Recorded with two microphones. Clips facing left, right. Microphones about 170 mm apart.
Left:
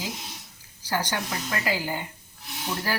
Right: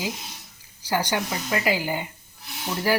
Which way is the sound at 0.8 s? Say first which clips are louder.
Right 3 dB; 15° right (ahead or behind).